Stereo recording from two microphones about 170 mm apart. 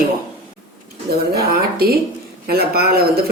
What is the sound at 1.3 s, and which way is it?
Speech, 65° right (ahead or behind).